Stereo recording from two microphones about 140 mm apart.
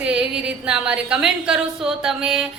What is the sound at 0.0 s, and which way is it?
A woman's voice, 5° right (ahead or behind).